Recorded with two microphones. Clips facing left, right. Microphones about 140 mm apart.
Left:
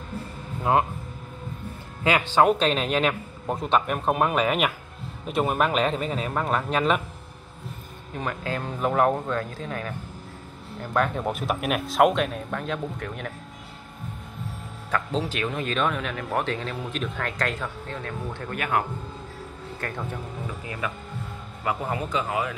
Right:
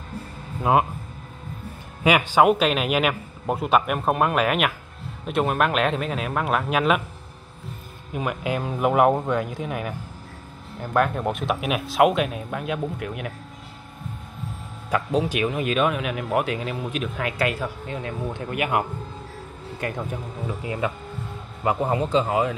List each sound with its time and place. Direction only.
2.0 s speech: 15° right (ahead or behind)
8.1 s speech: 15° right (ahead or behind)
14.9 s speech: 10° right (ahead or behind); by 22.5 s 30° right (ahead or behind)